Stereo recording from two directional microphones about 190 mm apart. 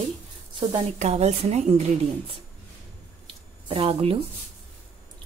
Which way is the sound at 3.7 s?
30° right (ahead or behind).